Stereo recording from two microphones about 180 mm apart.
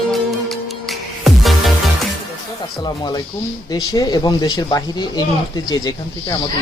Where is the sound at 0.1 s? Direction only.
Centre (ahead or behind).